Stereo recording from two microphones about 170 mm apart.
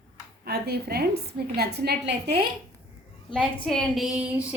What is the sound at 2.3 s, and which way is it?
Speech, 35° right (ahead or behind).